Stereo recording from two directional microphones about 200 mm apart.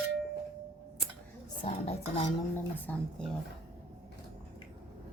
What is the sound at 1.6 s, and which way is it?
Speech, 30° left (ahead or behind).